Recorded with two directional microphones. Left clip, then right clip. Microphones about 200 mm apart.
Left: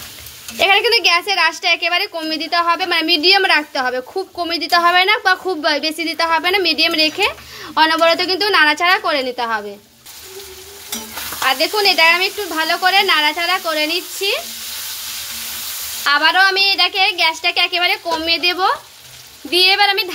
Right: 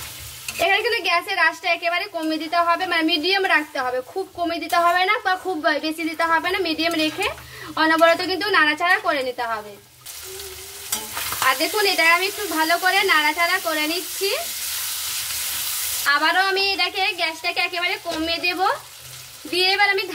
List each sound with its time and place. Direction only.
0.6 s a woman's voice: 50° left (ahead or behind)
11.4 s a woman's voice: 55° left (ahead or behind)
16.1 s a woman's voice: 50° left (ahead or behind)